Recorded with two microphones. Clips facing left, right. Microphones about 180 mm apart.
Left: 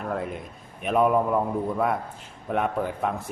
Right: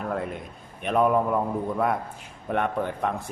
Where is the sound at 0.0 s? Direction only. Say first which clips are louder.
Even; centre (ahead or behind).